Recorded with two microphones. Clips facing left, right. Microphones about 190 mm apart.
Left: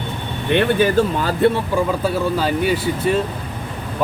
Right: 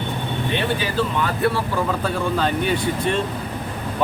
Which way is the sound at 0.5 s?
50° left (ahead or behind).